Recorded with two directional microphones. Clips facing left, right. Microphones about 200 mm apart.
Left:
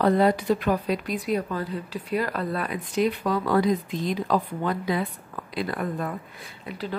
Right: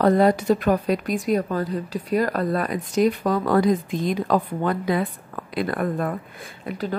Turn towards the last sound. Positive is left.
turn(degrees=-50)  # may be behind; listen again after turning